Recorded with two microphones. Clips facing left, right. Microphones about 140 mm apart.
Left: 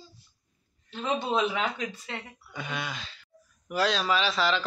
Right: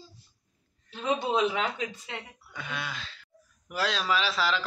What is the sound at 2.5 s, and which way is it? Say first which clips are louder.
Speech: left 2 dB; centre (ahead or behind).